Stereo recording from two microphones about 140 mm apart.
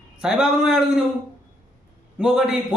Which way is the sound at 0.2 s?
5° right (ahead or behind).